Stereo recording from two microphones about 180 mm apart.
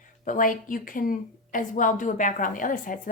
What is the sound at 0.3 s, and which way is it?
Speech, 50° left (ahead or behind).